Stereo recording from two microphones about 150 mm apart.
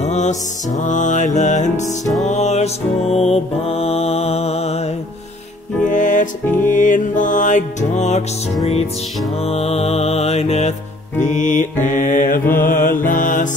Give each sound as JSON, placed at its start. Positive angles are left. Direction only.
{"t": 0.0, "sound": "music", "side_deg": 50}
{"t": 5.9, "sound": "music", "side_deg": 55}
{"t": 9.5, "sound": "music", "side_deg": 45}